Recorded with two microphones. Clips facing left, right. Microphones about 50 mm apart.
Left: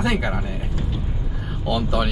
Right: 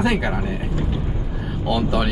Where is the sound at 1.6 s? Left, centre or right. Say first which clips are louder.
Right 1 dB; centre.